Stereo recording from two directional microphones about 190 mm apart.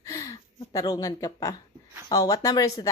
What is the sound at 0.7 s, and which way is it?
A woman's voice, 15° left (ahead or behind).